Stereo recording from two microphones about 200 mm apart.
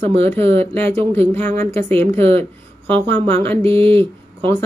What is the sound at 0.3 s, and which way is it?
Speech, 10° left (ahead or behind).